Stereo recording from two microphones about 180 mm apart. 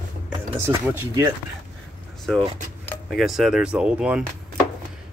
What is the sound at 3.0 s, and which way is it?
Speech, centre (ahead or behind).